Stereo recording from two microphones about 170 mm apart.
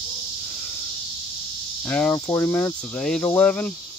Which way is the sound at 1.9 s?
10° left (ahead or behind).